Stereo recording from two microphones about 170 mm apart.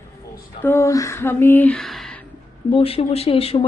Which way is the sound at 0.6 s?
15° left (ahead or behind).